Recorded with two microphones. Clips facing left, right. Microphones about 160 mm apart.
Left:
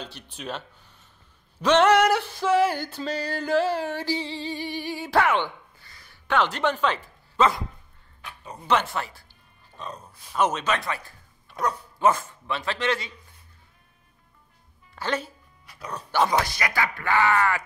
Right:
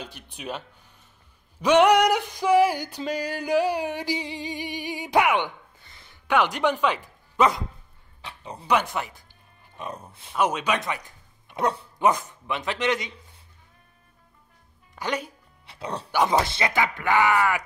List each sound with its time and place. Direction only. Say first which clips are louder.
0.0 s speech: even; 10° right (ahead or behind)
1.6 s a sound: right 1 dB; 10° right (ahead or behind)
8.6 s a man's voice: even; 15° right (ahead or behind)
15.0 s speech: left 1 dB; 15° right (ahead or behind)
15.6 s speech: right 4 dB; 25° right (ahead or behind)